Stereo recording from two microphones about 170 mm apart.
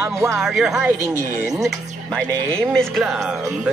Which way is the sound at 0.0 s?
15° right (ahead or behind).